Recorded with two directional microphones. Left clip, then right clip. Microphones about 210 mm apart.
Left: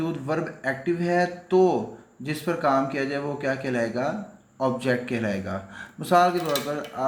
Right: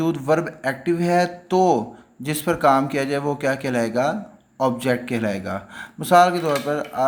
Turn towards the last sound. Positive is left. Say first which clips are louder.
# right 5 dB
turn(degrees=-40)  # may be behind; listen again after turning